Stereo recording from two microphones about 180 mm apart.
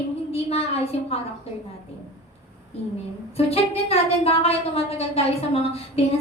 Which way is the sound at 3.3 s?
35° left (ahead or behind).